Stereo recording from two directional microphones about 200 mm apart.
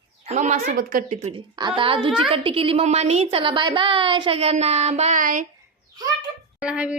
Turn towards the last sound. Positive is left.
turn(degrees=-5)  # may be behind; listen again after turning